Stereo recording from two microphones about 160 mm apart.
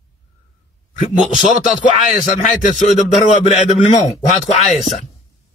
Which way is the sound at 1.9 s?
45° left (ahead or behind).